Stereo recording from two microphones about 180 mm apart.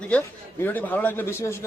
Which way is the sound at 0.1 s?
5° left (ahead or behind).